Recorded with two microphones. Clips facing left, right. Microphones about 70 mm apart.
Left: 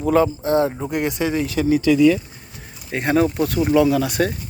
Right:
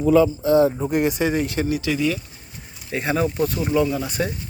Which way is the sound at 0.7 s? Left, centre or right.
Left.